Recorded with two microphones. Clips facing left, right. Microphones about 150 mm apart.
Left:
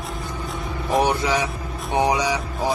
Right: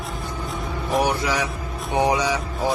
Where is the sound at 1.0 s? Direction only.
25° left (ahead or behind).